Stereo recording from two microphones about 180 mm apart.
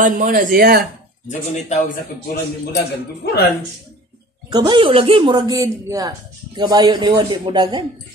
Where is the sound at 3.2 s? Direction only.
65° left (ahead or behind).